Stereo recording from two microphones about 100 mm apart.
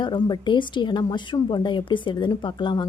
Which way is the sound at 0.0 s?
50° left (ahead or behind).